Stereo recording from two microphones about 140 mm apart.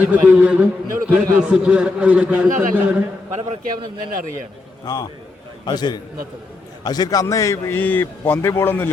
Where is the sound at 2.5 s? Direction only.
70° right (ahead or behind).